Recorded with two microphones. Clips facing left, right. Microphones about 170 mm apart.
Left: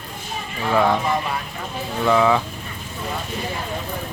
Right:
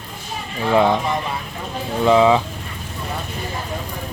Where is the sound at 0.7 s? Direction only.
20° right (ahead or behind).